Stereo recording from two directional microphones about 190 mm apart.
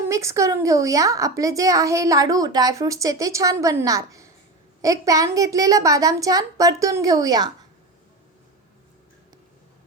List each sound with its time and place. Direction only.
0.0 s a woman's voice: 15° right (ahead or behind)